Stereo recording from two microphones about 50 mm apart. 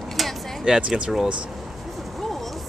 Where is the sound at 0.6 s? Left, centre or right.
Centre.